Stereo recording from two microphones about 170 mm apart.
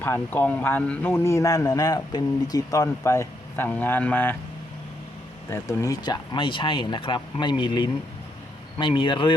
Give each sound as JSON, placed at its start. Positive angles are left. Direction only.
{"t": 0.0, "sound": "speech", "side_deg": 10}
{"t": 5.5, "sound": "speech", "side_deg": 20}